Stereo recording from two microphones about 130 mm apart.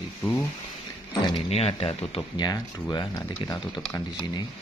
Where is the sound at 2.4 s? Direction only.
35° left (ahead or behind).